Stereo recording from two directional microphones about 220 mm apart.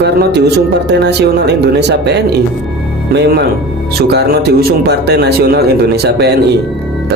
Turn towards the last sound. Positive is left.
turn(degrees=-45)  # may be behind; listen again after turning